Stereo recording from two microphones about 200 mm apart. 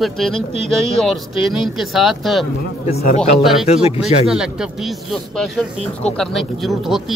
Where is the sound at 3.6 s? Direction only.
30° left (ahead or behind).